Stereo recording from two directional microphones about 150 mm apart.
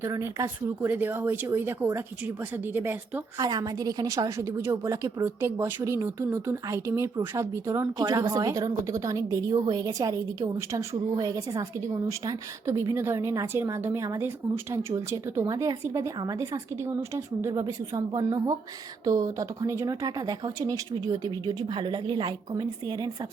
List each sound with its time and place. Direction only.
0.0 s speech: 20° right (ahead or behind)
3.3 s a woman's voice: 25° right (ahead or behind)